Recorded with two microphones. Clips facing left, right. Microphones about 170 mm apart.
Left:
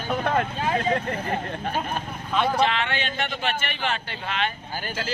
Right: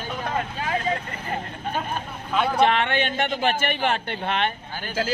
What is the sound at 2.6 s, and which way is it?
A man's voice, 55° right (ahead or behind).